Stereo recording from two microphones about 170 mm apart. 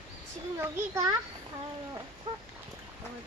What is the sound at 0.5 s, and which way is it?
Speech, 15° right (ahead or behind).